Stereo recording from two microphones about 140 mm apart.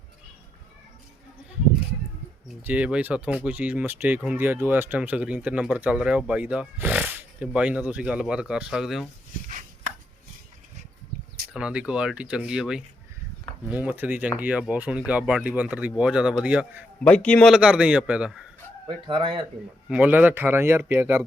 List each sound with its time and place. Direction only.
2.6 s speech: 10° right (ahead or behind)
11.5 s speech: 5° right (ahead or behind)
17.0 s a man's voice: 10° left (ahead or behind)
17.5 s speech: 5° right (ahead or behind)
19.0 s speech: 35° right (ahead or behind)
19.9 s speech: 10° right (ahead or behind)